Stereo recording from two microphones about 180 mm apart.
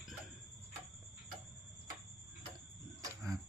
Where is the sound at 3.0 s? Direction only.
20° right (ahead or behind).